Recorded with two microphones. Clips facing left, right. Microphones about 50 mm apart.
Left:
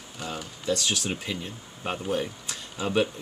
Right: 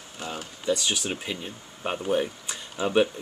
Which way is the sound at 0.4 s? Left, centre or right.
Centre.